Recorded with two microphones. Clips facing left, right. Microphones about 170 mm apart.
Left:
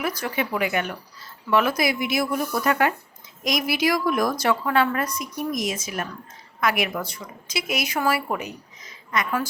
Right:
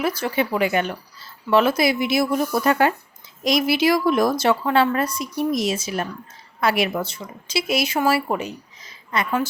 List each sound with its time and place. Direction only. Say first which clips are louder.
0.0 s a woman's voice: right 4 dB; 30° right (ahead or behind)